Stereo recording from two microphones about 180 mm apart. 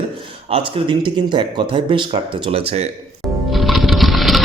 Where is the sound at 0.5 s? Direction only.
25° right (ahead or behind).